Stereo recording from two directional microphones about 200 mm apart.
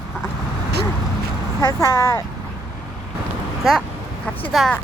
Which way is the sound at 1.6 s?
15° left (ahead or behind).